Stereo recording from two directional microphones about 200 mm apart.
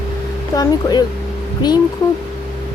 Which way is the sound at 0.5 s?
20° left (ahead or behind).